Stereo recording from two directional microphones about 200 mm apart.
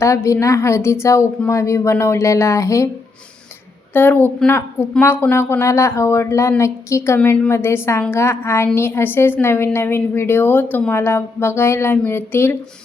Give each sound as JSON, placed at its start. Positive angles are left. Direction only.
{"t": 0.0, "sound": "speech", "side_deg": 15}
{"t": 3.9, "sound": "speech", "side_deg": 10}